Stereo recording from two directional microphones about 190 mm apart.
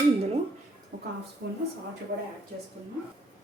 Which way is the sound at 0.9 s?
50° right (ahead or behind).